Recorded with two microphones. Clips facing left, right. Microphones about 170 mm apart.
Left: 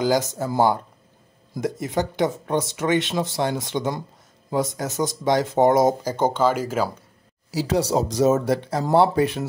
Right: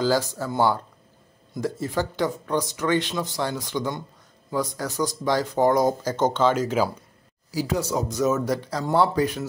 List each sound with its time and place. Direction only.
0.0 s speech: 20° left (ahead or behind)
6.0 s speech: 10° left (ahead or behind)
8.1 s speech: 30° left (ahead or behind)